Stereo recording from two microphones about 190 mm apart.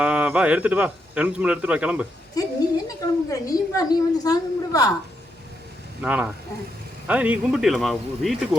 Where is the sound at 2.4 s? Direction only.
20° left (ahead or behind).